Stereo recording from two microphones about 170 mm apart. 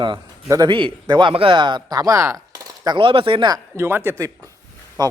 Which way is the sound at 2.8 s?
30° right (ahead or behind).